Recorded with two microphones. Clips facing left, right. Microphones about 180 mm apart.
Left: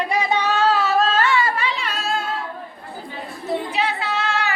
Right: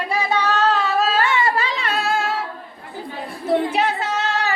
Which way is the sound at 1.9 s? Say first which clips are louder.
Right 4 dB; 65° right (ahead or behind).